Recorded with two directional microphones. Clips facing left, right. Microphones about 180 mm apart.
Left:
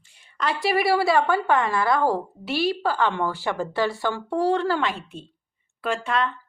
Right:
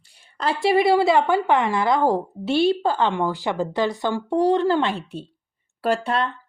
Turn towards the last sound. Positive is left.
turn(degrees=-35)  # may be behind; listen again after turning